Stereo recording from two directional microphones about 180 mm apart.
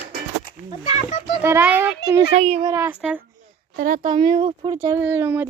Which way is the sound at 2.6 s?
15° right (ahead or behind).